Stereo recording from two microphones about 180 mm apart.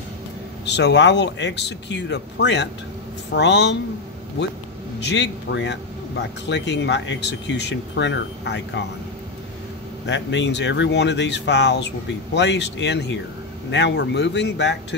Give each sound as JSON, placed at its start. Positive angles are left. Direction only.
{"t": 0.7, "sound": "speech", "side_deg": 75}
{"t": 5.0, "sound": "speech", "side_deg": 75}
{"t": 10.0, "sound": "speech", "side_deg": 80}